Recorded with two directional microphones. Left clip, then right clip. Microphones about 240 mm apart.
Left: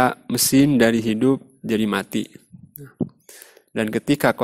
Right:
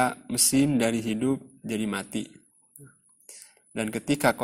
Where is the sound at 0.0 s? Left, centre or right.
Left.